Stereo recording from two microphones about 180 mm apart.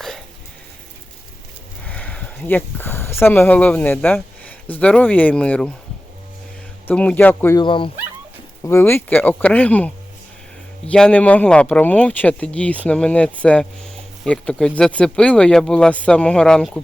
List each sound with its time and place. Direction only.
1.8 s speech: 10° left (ahead or behind)
6.8 s speech: 5° left (ahead or behind)
7.6 s speech: 30° left (ahead or behind)
8.6 s speech: 15° left (ahead or behind)